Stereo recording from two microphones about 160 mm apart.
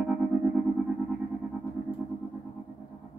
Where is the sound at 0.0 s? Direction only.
5° right (ahead or behind).